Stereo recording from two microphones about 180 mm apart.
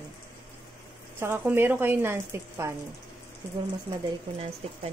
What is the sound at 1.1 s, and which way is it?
A woman's voice, 10° right (ahead or behind).